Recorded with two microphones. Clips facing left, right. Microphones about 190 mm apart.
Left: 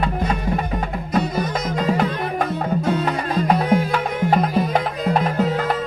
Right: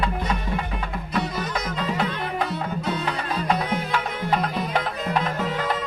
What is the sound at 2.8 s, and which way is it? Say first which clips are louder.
Music: left 6 dB; 50° left (ahead or behind).